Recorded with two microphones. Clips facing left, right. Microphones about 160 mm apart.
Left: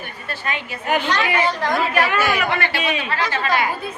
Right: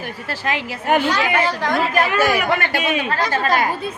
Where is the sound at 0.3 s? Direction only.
90° right.